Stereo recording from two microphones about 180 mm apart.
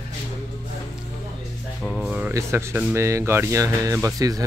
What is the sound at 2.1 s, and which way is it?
Speech, 10° right (ahead or behind).